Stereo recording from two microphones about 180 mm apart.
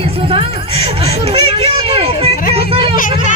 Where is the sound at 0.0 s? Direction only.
30° right (ahead or behind).